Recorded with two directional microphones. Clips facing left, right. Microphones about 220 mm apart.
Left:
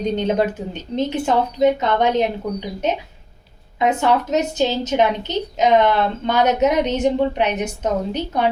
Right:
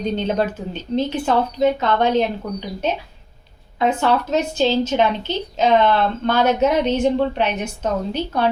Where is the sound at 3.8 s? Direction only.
15° left (ahead or behind).